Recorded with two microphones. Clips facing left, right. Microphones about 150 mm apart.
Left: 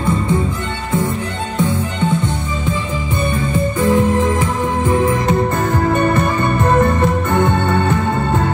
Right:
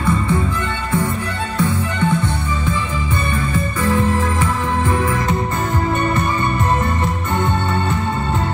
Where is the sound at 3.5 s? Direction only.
20° left (ahead or behind).